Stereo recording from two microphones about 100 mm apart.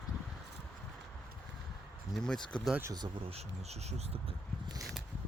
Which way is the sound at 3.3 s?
90° right.